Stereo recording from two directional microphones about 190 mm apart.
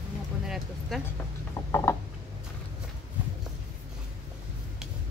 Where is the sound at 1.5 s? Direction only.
15° left (ahead or behind).